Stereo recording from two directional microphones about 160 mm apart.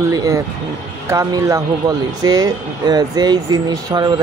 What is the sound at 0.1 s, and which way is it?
Speech, 20° right (ahead or behind).